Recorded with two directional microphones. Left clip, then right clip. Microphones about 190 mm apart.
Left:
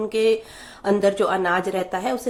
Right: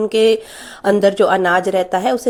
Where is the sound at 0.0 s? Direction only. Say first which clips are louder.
Right 6 dB; 40° right (ahead or behind).